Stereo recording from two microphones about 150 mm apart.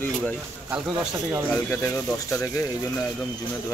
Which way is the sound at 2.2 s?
20° left (ahead or behind).